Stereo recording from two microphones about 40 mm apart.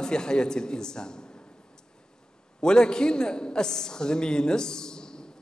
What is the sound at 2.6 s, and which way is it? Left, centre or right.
A man's voice, centre.